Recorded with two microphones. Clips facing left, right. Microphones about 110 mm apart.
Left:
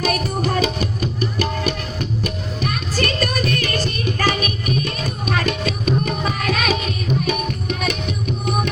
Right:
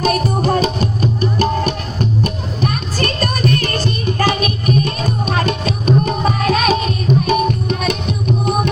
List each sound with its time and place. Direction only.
0.1 s music: 30° right (ahead or behind)